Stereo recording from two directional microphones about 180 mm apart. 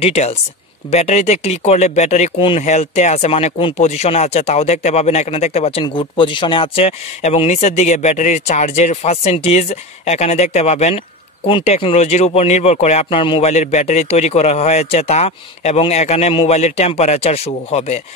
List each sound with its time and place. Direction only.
0.0 s speech: 35° left (ahead or behind)